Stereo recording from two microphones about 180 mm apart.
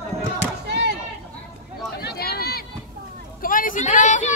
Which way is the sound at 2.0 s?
60° left (ahead or behind).